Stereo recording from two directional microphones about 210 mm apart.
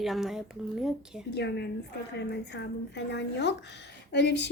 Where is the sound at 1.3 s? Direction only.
55° left (ahead or behind).